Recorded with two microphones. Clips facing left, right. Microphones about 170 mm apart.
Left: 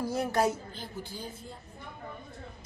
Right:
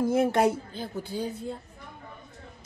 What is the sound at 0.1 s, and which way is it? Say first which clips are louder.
Speech: right 4 dB; 55° right (ahead or behind).